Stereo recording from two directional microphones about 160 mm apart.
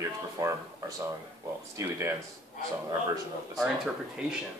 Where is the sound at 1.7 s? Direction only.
20° right (ahead or behind).